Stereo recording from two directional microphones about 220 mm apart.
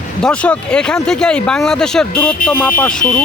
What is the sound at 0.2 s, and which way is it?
Speech, 5° left (ahead or behind).